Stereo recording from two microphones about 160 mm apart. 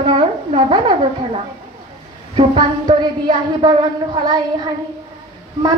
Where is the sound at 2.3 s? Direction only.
30° right (ahead or behind).